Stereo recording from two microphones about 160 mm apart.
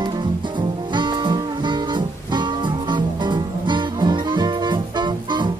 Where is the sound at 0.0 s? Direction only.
30° right (ahead or behind).